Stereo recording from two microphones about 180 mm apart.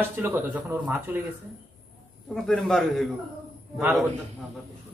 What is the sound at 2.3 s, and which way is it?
Speech, 5° left (ahead or behind).